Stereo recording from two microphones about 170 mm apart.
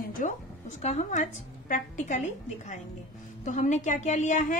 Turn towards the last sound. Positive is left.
turn(degrees=50)  # may be behind; listen again after turning